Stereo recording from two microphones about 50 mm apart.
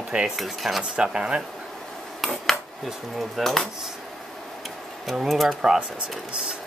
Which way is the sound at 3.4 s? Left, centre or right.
Centre.